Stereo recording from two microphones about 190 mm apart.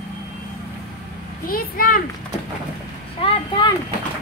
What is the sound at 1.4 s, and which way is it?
Speech, 50° left (ahead or behind).